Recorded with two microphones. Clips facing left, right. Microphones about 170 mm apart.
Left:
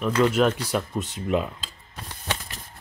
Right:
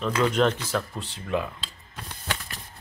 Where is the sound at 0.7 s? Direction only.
20° left (ahead or behind).